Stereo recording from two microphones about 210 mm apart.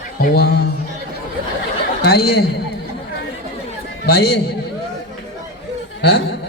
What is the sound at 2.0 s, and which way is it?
Speech, 45° left (ahead or behind).